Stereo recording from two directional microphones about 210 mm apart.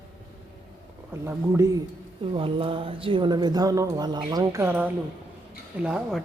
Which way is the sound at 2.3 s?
25° right (ahead or behind).